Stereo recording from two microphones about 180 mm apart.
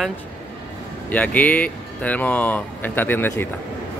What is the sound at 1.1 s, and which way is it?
Speech, 10° left (ahead or behind).